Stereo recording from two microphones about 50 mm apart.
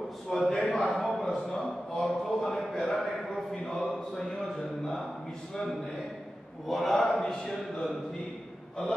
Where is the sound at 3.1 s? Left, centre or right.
Centre.